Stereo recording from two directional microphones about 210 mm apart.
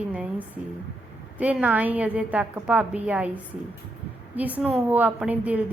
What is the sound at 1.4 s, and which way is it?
A woman's voice, 5° right (ahead or behind).